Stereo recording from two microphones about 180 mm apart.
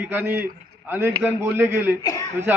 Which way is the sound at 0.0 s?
10° right (ahead or behind).